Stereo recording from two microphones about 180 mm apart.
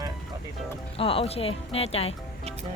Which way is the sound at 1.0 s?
30° left (ahead or behind).